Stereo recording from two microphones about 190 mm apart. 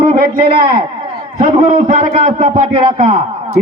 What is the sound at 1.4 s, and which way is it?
A man's voice, 35° right (ahead or behind).